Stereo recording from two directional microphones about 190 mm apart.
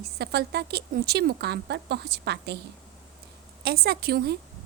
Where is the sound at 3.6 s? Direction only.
55° right (ahead or behind).